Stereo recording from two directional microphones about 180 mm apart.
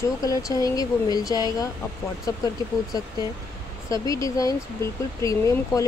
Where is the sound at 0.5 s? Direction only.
20° left (ahead or behind).